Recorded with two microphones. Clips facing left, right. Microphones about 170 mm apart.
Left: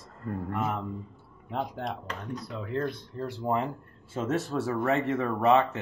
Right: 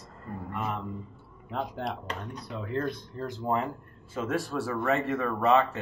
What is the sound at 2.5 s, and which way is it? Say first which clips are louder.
Speech: even; 5° right (ahead or behind).